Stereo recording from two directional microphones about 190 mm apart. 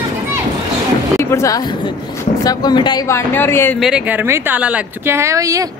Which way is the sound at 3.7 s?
5° right (ahead or behind).